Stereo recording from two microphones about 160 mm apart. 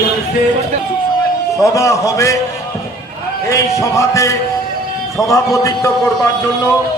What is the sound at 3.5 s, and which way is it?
A man's voice, 20° left (ahead or behind).